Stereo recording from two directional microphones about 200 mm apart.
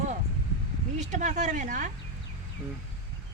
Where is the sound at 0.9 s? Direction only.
35° right (ahead or behind).